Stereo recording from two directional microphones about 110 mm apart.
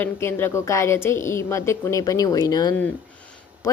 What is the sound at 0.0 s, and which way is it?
A woman's voice, 20° left (ahead or behind).